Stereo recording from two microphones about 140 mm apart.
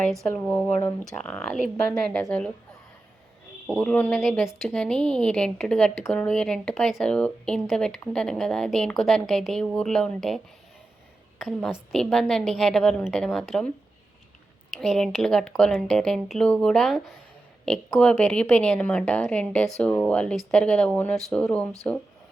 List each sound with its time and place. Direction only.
0.0 s a woman's voice: centre (ahead or behind)
0.5 s a woman's voice: 15° left (ahead or behind)
1.0 s a woman's voice: 5° left (ahead or behind)
3.8 s a woman's voice: 10° left (ahead or behind)
14.8 s a woman's voice: centre (ahead or behind)